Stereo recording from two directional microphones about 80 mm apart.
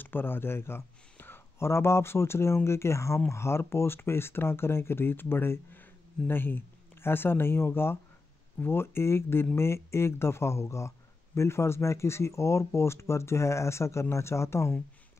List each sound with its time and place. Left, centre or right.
0.0 s speech: left